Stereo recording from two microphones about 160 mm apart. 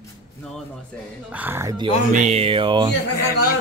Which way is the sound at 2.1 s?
45° right (ahead or behind).